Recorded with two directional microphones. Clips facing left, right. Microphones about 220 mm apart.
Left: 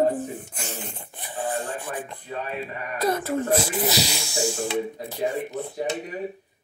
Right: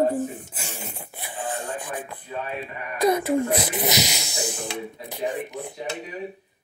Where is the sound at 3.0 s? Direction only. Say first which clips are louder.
Right 4 dB; 15° right (ahead or behind).